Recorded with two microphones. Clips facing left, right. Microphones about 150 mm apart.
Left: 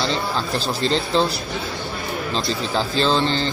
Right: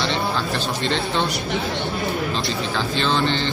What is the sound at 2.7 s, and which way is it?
Speech, 35° left (ahead or behind).